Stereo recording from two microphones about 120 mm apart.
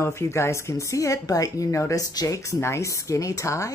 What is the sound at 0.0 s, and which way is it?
A woman's voice, 20° left (ahead or behind).